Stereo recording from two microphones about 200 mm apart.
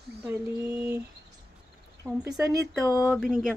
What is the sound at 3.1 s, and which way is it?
Mantra, centre (ahead or behind).